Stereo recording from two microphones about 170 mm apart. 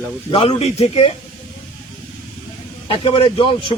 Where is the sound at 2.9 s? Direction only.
35° left (ahead or behind).